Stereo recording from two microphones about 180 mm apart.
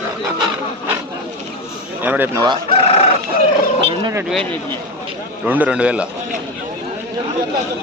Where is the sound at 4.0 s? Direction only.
15° right (ahead or behind).